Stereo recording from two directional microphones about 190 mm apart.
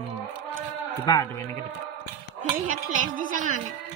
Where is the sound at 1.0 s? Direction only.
20° left (ahead or behind).